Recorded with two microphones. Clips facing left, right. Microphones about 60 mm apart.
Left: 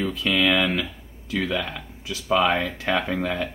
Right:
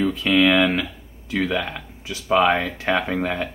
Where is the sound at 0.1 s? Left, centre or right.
Right.